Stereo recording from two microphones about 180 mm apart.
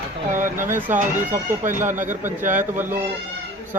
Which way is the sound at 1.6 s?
45° right (ahead or behind).